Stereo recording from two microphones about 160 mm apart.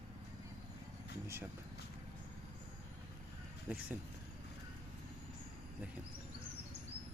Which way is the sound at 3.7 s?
10° right (ahead or behind).